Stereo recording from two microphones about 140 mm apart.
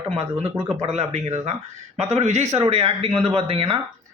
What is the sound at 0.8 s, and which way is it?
Speech, 50° right (ahead or behind).